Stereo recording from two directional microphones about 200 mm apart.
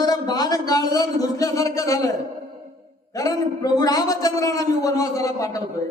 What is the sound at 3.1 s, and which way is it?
A man's voice, 15° left (ahead or behind).